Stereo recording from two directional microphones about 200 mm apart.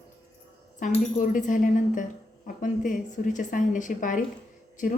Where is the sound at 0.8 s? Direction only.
40° left (ahead or behind).